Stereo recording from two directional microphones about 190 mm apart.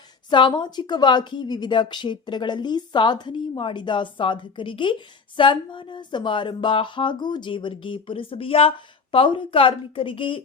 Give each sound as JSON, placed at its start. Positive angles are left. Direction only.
{"t": 0.3, "sound": "a woman's voice", "side_deg": 25}